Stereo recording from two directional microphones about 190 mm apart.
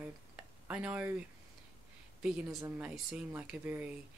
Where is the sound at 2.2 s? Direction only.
5° right (ahead or behind).